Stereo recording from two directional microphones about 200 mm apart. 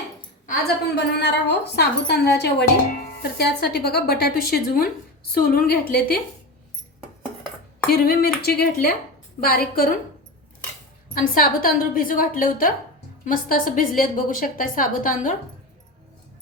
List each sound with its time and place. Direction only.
0.9 s a woman's voice: 55° left (ahead or behind)
7.9 s a woman's voice: 50° left (ahead or behind)
11.1 s a woman's voice: 45° left (ahead or behind)